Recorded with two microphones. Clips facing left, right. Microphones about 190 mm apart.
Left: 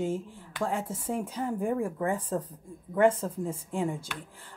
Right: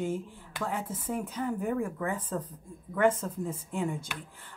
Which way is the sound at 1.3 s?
30° left (ahead or behind).